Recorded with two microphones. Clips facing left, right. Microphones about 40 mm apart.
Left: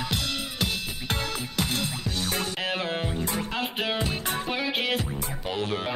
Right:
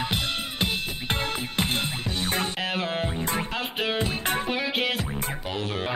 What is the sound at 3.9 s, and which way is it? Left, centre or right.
Music, right.